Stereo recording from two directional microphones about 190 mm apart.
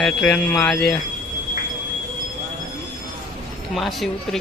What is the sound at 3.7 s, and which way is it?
Speech, centre (ahead or behind).